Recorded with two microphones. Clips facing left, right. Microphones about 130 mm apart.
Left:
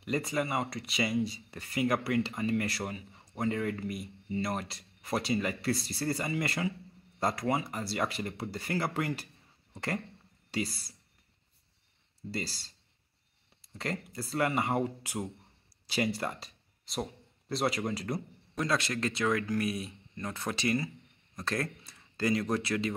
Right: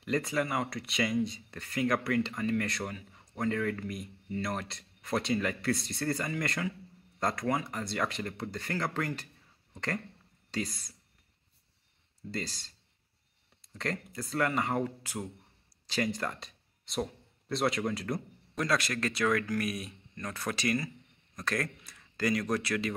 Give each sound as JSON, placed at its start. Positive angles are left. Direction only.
{"t": 0.0, "sound": "speech", "side_deg": 0}
{"t": 12.3, "sound": "speech", "side_deg": 5}
{"t": 18.6, "sound": "speech", "side_deg": 25}